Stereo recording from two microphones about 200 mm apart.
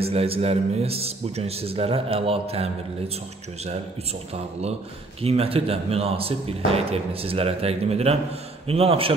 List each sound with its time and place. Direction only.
0.0 s a man's voice: 30° right (ahead or behind)
5.2 s a man's voice: 30° right (ahead or behind)